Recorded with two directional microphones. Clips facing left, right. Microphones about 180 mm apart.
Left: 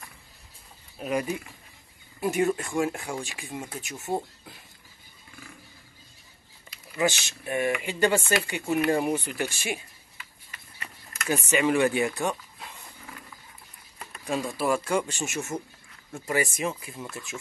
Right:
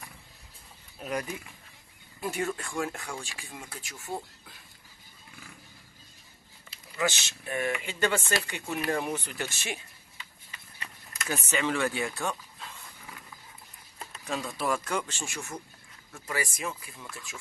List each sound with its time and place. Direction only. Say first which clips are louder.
0.9 s speech: left 5 dB; 10° left (ahead or behind)
7.0 s speech: left 4 dB; 15° left (ahead or behind)
11.4 s speech: left 6 dB; 15° left (ahead or behind)
14.2 s speech: left 4 dB; 15° left (ahead or behind)